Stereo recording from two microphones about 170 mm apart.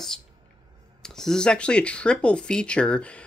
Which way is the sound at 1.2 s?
5° left (ahead or behind).